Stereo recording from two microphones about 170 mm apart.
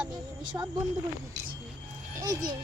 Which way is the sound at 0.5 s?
15° right (ahead or behind).